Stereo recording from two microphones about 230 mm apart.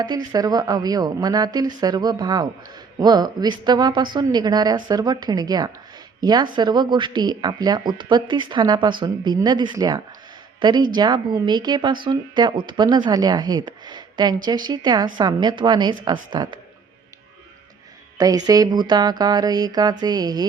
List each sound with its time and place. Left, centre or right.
0.0 s a woman's voice: centre
18.2 s a woman's voice: centre